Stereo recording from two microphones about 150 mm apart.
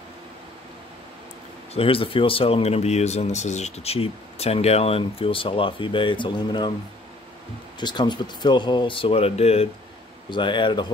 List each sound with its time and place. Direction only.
1.7 s speech: 40° left (ahead or behind)
7.8 s speech: 30° left (ahead or behind)
10.3 s speech: 30° left (ahead or behind)